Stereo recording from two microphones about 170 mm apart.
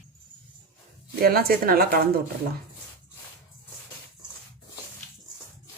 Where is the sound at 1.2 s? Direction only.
65° right (ahead or behind).